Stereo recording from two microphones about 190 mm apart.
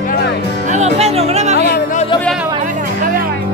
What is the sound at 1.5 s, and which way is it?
Music, 55° left (ahead or behind).